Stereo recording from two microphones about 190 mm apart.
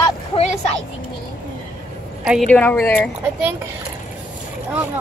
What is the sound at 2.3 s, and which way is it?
Speech, 5° left (ahead or behind).